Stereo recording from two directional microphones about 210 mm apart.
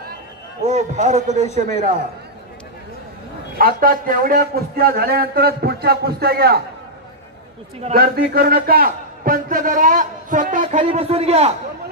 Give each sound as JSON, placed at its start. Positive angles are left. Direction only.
{"t": 0.7, "sound": "a man's voice", "side_deg": -35}
{"t": 3.5, "sound": "a man's voice", "side_deg": -45}
{"t": 7.9, "sound": "a man's voice", "side_deg": -45}
{"t": 10.8, "sound": "speech", "side_deg": -30}